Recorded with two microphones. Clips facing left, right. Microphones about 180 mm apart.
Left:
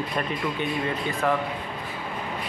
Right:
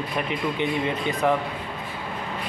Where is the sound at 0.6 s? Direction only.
20° right (ahead or behind).